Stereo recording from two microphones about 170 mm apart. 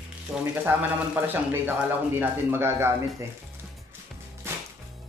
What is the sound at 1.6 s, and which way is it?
Speech, 10° right (ahead or behind).